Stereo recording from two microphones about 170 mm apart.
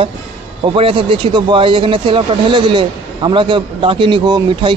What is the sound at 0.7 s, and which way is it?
Speech, 30° right (ahead or behind).